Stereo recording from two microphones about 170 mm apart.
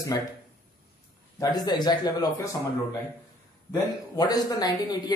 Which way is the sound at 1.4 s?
25° left (ahead or behind).